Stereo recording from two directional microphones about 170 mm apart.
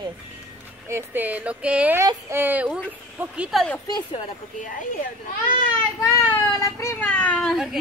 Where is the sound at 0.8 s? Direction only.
15° right (ahead or behind).